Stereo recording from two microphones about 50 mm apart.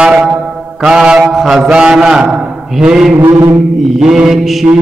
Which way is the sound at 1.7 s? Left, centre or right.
Centre.